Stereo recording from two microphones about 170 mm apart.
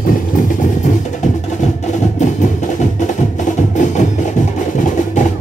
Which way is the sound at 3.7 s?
45° left (ahead or behind).